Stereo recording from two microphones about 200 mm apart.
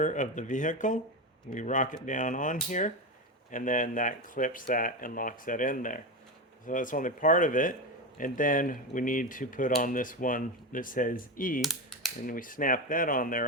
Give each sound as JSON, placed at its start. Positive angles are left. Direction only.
{"t": 0.0, "sound": "speech", "side_deg": 40}
{"t": 11.6, "sound": "a sound", "side_deg": 0}
{"t": 12.2, "sound": "speech", "side_deg": 45}